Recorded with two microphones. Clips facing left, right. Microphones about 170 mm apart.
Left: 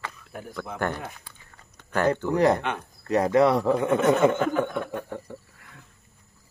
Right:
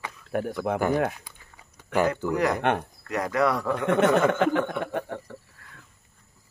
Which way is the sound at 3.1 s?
30° left (ahead or behind).